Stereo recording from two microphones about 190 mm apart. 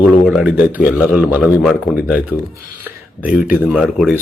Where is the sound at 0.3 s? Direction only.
5° right (ahead or behind).